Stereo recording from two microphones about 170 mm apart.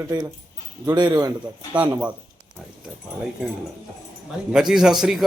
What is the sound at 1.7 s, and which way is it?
Speech, 10° right (ahead or behind).